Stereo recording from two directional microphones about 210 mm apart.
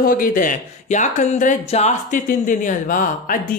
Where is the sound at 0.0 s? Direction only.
40° left (ahead or behind).